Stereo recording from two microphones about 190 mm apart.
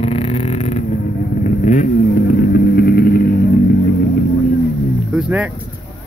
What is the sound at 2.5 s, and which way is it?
Vehicle, 55° left (ahead or behind).